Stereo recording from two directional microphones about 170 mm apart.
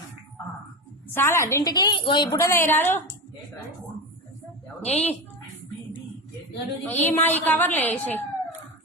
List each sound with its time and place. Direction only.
1.1 s a woman's voice: 15° left (ahead or behind)
2.4 s a woman's voice: 15° left (ahead or behind)
4.8 s a woman's voice: 35° left (ahead or behind)
6.8 s a woman's voice: 10° left (ahead or behind)